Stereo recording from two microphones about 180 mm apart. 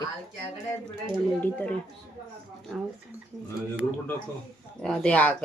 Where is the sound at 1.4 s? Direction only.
10° left (ahead or behind).